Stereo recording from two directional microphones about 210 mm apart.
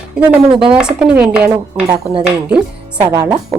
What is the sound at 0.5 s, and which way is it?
Speech, 25° right (ahead or behind).